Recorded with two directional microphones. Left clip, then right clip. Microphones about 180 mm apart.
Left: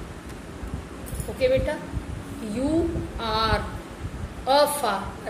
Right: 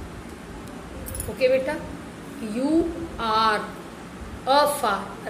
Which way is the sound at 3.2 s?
10° right (ahead or behind).